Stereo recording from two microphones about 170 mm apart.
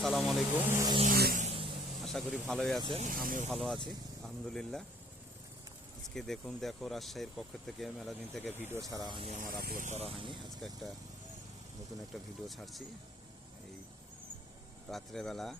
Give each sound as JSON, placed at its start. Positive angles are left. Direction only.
{"t": 0.0, "sound": "speech", "side_deg": 0}
{"t": 0.7, "sound": "a sound", "side_deg": -15}
{"t": 1.0, "sound": "a sound", "side_deg": -60}
{"t": 1.4, "sound": "vehicle", "side_deg": -35}
{"t": 2.1, "sound": "speech", "side_deg": 5}
{"t": 3.0, "sound": "speech", "side_deg": -55}
{"t": 3.5, "sound": "speech", "side_deg": 0}
{"t": 6.1, "sound": "speech", "side_deg": 0}
{"t": 8.6, "sound": "speech", "side_deg": -15}
{"t": 9.3, "sound": "speech", "side_deg": -55}
{"t": 10.6, "sound": "speech", "side_deg": 5}
{"t": 12.1, "sound": "speech", "side_deg": 0}
{"t": 14.8, "sound": "speech", "side_deg": 0}